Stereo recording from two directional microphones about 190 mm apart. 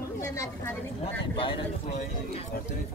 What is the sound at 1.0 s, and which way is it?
Speech, 30° left (ahead or behind).